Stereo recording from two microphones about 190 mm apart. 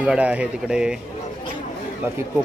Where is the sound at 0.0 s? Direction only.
5° right (ahead or behind).